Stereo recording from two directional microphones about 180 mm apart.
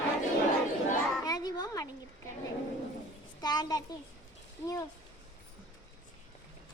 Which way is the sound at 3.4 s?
20° left (ahead or behind).